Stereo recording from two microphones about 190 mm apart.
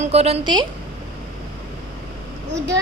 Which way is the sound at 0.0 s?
35° right (ahead or behind).